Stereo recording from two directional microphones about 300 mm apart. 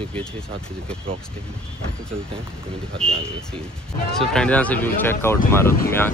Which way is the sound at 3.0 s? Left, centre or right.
Centre.